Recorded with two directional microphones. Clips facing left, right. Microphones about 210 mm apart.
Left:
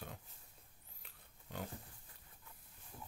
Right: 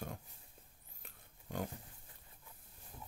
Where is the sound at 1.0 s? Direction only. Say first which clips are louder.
Right 5 dB; 45° right (ahead or behind).